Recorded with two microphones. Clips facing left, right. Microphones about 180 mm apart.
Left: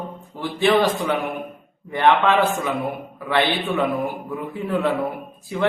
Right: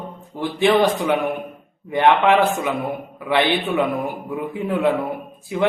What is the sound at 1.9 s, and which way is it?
Speech, 15° right (ahead or behind).